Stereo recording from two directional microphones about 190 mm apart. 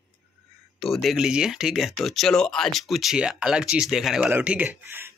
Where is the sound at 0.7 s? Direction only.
Centre (ahead or behind).